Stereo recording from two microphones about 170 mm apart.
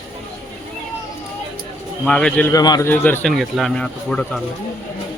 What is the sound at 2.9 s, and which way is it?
A man's voice, 10° left (ahead or behind).